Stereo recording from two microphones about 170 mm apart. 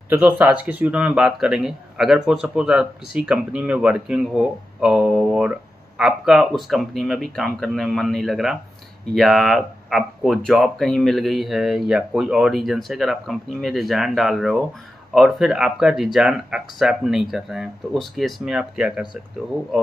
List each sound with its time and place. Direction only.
0.1 s speech: 10° right (ahead or behind)